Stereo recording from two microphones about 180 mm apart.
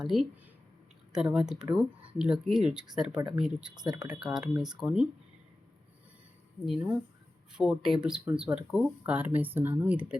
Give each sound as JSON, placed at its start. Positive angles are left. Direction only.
{"t": 0.0, "sound": "speech", "side_deg": 0}
{"t": 3.9, "sound": "speech", "side_deg": -20}
{"t": 4.2, "sound": "speech", "side_deg": -5}
{"t": 6.7, "sound": "speech", "side_deg": -5}